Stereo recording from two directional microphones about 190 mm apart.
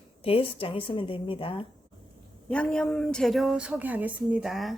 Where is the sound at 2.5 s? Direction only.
5° left (ahead or behind).